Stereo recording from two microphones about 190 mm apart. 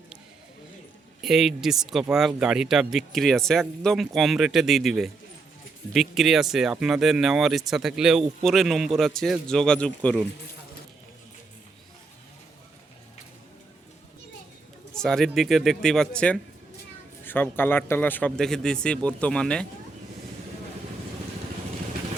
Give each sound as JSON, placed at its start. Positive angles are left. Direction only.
{"t": 1.2, "sound": "speech", "side_deg": 0}
{"t": 14.9, "sound": "a man's voice", "side_deg": 5}